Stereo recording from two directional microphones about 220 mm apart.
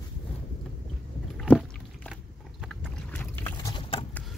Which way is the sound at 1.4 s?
5° left (ahead or behind).